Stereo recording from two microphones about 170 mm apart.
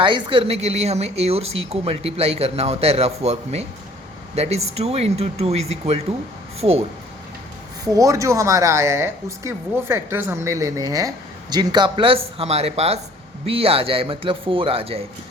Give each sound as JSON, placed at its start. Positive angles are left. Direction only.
{"t": 0.0, "sound": "a woman's voice", "side_deg": -30}
{"t": 7.9, "sound": "a woman's voice", "side_deg": -20}